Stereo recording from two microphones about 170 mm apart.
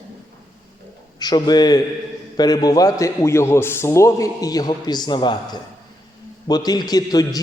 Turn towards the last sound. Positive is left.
turn(degrees=20)  # may be behind; listen again after turning